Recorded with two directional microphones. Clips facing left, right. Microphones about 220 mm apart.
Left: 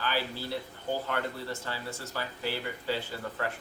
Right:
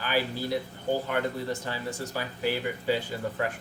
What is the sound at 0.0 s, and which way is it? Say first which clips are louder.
Speech: right 4 dB; 15° right (ahead or behind).